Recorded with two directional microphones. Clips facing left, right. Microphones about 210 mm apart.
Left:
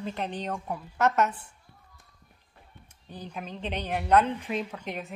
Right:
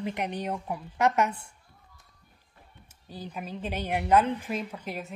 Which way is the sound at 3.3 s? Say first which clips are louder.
Even; 5° right (ahead or behind).